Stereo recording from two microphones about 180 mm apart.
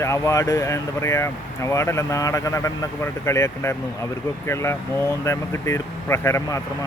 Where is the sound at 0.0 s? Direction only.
15° left (ahead or behind).